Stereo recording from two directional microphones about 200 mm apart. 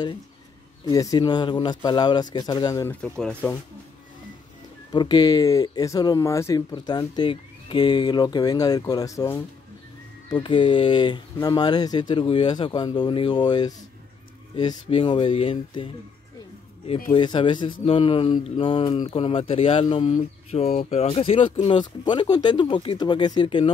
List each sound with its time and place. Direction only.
0.8 s speech: 20° left (ahead or behind)
4.9 s speech: 20° left (ahead or behind)
17.1 s speech: 25° left (ahead or behind)
20.1 s speech: 35° left (ahead or behind)